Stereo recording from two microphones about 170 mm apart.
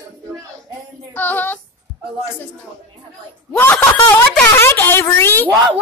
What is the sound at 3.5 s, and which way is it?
Speech, 10° left (ahead or behind).